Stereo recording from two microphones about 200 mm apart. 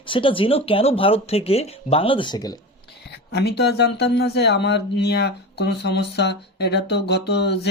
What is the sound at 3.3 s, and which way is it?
Speech, 55° left (ahead or behind).